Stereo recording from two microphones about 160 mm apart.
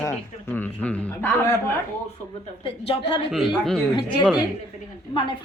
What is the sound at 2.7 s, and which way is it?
Speech, 35° left (ahead or behind).